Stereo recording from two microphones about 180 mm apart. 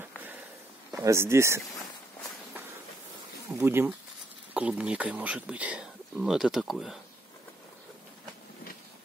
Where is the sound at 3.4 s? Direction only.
15° right (ahead or behind).